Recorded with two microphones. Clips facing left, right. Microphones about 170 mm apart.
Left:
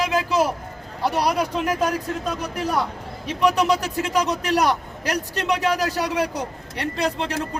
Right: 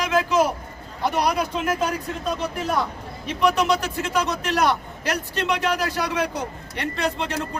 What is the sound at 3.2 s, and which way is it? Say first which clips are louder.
Speech: left 1 dB; 35° left (ahead or behind).